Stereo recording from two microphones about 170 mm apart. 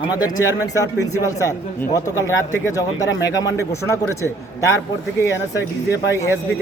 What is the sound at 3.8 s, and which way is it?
Speech, 15° left (ahead or behind).